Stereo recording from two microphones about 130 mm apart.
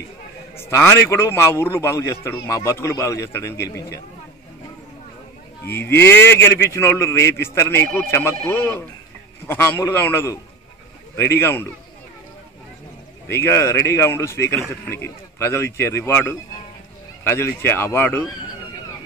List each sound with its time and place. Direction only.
0.6 s a man's voice: 20° left (ahead or behind)
5.7 s a man's voice: 15° left (ahead or behind)
13.3 s a man's voice: 20° left (ahead or behind)